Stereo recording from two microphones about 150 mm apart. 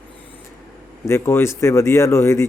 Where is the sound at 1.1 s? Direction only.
15° left (ahead or behind).